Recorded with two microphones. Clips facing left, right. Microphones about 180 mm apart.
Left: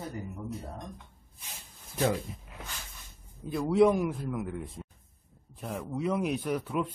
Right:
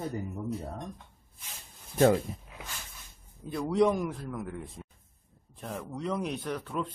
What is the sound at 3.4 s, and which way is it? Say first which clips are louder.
A man's voice: left 2 dB; 5° left (ahead or behind).